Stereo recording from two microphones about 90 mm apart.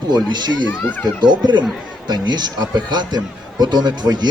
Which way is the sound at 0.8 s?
20° left (ahead or behind).